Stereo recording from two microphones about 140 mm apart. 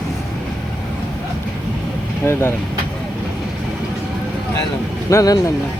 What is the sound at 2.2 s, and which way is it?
Speech, 20° left (ahead or behind).